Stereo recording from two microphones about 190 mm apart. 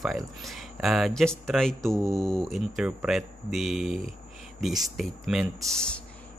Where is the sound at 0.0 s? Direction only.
Centre (ahead or behind).